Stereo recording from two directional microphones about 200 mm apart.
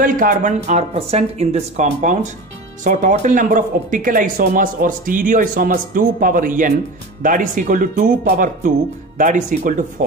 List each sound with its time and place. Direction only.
0.0 s speech: 40° right (ahead or behind)